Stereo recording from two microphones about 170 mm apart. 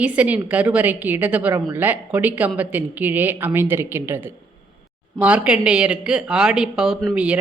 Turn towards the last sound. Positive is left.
turn(degrees=-5)  # may be behind; listen again after turning